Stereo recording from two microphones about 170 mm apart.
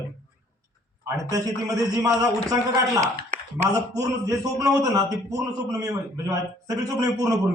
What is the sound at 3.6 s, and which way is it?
A man's voice, 20° right (ahead or behind).